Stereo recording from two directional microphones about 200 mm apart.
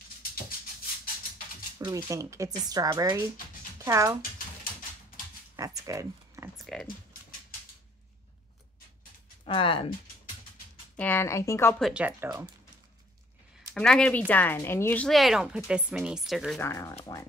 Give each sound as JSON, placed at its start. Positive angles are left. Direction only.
{"t": 1.8, "sound": "speech", "side_deg": -15}
{"t": 5.6, "sound": "speech", "side_deg": -15}
{"t": 6.5, "sound": "speech", "side_deg": 0}
{"t": 9.4, "sound": "speech", "side_deg": 25}
{"t": 11.0, "sound": "speech", "side_deg": 10}
{"t": 11.8, "sound": "speech", "side_deg": -5}
{"t": 13.7, "sound": "speech", "side_deg": 5}
{"t": 16.5, "sound": "speech", "side_deg": 15}